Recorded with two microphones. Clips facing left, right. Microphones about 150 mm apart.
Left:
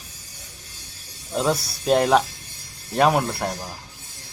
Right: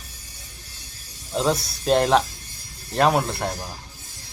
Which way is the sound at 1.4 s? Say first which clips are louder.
Even; 5° left (ahead or behind).